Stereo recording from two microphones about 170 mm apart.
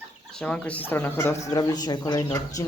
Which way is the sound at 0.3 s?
5° left (ahead or behind).